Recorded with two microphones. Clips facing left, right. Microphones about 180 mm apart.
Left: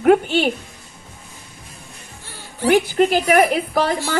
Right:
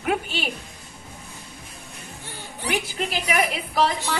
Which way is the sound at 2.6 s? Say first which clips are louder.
Left 12 dB; 60° left (ahead or behind).